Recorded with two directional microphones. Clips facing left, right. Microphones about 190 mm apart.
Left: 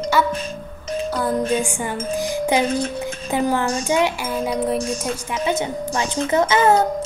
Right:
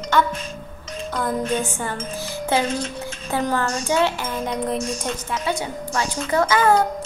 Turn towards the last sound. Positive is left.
turn(degrees=25)  # may be behind; listen again after turning